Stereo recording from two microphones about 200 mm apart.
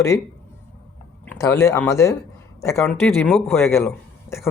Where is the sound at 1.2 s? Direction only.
10° left (ahead or behind).